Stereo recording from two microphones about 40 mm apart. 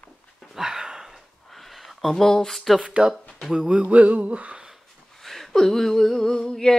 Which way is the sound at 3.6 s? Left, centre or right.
Right.